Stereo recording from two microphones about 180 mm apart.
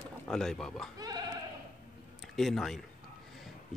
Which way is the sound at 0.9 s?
20° right (ahead or behind).